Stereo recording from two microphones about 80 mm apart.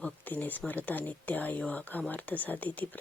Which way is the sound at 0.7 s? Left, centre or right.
Left.